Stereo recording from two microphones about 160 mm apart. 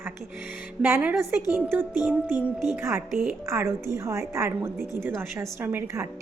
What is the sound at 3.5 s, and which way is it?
A woman's voice, 15° right (ahead or behind).